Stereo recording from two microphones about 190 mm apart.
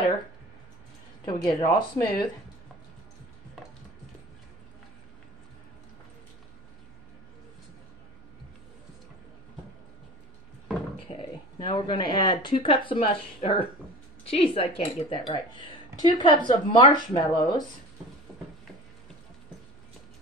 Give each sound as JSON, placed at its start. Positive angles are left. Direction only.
{"t": 1.2, "sound": "speech", "side_deg": 20}
{"t": 11.1, "sound": "speech", "side_deg": 25}